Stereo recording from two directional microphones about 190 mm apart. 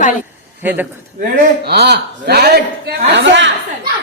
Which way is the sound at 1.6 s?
60° right (ahead or behind).